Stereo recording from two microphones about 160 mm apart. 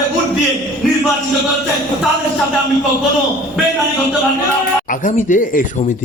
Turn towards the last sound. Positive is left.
turn(degrees=55)  # may be behind; listen again after turning